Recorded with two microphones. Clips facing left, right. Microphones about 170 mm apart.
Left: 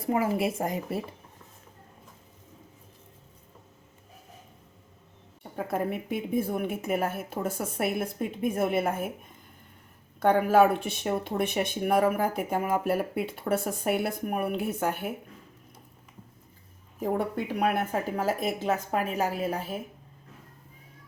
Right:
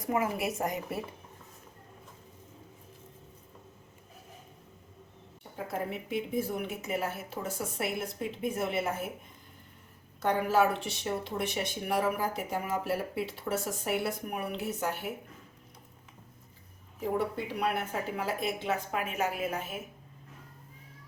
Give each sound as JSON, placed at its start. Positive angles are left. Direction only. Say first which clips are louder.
{"t": 0.0, "sound": "speech", "louder": "left 4 dB", "side_deg": 30}
{"t": 5.5, "sound": "a woman's voice", "louder": "left 5 dB", "side_deg": 55}
{"t": 10.2, "sound": "speech", "louder": "left 6 dB", "side_deg": 55}
{"t": 17.0, "sound": "a woman's voice", "louder": "left 3 dB", "side_deg": 50}